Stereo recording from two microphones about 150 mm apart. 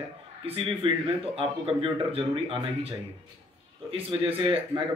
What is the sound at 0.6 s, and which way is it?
Speech, 35° right (ahead or behind).